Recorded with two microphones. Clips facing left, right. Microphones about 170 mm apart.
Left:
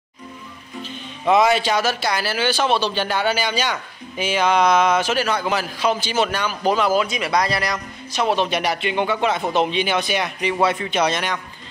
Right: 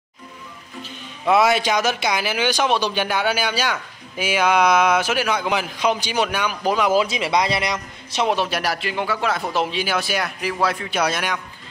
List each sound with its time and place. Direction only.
0.8 s speech: 5° right (ahead or behind)
6.9 s a man's voice: 25° right (ahead or behind)
8.4 s speech: centre (ahead or behind)